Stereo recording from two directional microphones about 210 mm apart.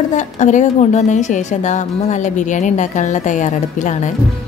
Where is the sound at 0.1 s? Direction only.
35° left (ahead or behind).